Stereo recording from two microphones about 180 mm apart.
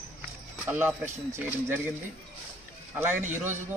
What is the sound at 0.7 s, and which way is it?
Speech, 10° right (ahead or behind).